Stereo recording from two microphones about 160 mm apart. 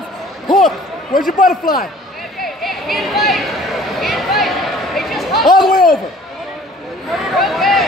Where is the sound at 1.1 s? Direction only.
60° left (ahead or behind).